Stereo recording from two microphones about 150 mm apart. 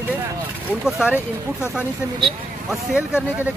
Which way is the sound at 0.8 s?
5° right (ahead or behind).